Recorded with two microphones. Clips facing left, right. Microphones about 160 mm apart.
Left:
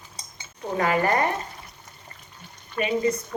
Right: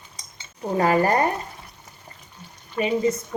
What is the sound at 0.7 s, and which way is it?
Speech, 35° right (ahead or behind).